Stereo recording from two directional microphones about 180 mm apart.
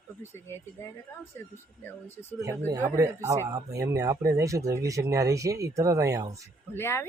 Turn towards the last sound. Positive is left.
turn(degrees=15)  # may be behind; listen again after turning